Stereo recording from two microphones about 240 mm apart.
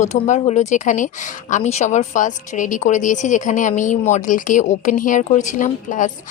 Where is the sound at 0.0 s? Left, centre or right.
Left.